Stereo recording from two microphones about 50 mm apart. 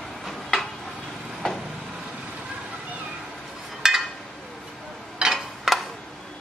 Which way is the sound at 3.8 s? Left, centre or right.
Centre.